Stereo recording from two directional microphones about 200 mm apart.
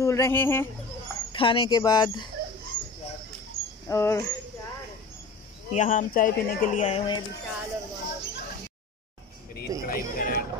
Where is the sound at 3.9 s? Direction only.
15° left (ahead or behind).